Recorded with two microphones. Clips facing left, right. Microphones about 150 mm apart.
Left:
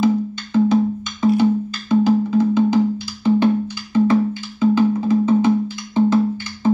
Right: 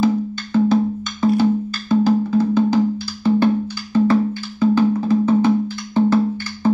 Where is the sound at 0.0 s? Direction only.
20° left (ahead or behind).